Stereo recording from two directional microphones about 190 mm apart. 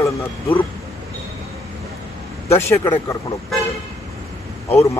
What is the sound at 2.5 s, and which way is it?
Speech, 15° left (ahead or behind).